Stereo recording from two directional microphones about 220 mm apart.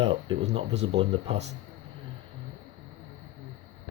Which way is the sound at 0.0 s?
25° right (ahead or behind).